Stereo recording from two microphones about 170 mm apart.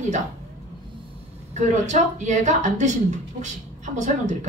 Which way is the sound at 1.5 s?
45° right (ahead or behind).